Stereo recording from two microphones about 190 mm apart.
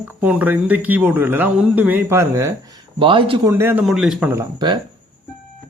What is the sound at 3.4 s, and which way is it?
Speech, 15° right (ahead or behind).